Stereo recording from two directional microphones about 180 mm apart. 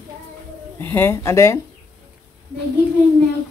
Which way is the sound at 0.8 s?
10° left (ahead or behind).